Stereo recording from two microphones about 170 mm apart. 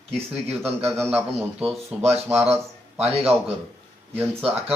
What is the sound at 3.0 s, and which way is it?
Speech, 35° right (ahead or behind).